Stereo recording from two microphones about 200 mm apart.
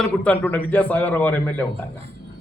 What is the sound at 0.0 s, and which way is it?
A man's voice, 5° left (ahead or behind).